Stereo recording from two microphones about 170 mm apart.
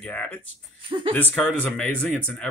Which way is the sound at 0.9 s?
30° right (ahead or behind).